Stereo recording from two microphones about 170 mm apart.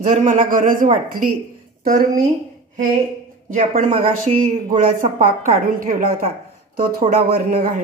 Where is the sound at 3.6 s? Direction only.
45° right (ahead or behind).